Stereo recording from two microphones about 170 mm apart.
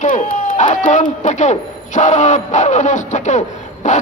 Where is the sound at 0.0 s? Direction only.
45° left (ahead or behind).